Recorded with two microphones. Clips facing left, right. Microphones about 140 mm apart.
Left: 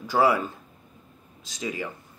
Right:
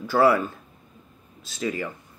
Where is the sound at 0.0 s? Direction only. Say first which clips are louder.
Right 3 dB; 15° left (ahead or behind).